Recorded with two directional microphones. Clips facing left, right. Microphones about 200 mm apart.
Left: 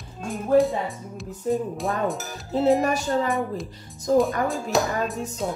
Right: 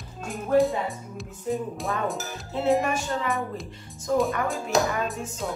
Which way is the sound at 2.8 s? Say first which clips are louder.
Left 4 dB; 35° left (ahead or behind).